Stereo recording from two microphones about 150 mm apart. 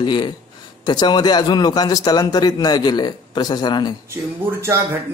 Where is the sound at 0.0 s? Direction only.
30° left (ahead or behind).